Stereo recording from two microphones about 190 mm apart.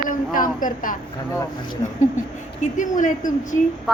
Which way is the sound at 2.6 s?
40° left (ahead or behind).